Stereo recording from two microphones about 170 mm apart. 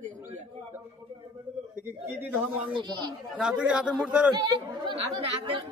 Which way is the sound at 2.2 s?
10° right (ahead or behind).